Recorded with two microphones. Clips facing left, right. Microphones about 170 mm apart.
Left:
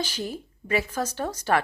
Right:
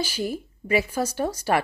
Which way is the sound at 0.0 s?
10° right (ahead or behind).